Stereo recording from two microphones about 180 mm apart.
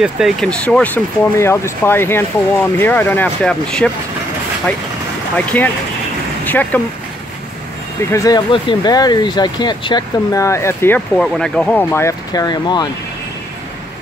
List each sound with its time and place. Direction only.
0.0 s speech: centre (ahead or behind)
5.3 s speech: 10° left (ahead or behind)
6.4 s vehicle: 10° left (ahead or behind)
8.1 s speech: 20° left (ahead or behind)